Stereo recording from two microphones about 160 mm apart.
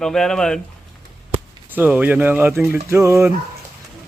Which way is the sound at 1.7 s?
10° right (ahead or behind).